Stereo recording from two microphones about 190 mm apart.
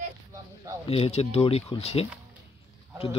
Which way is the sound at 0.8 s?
30° left (ahead or behind).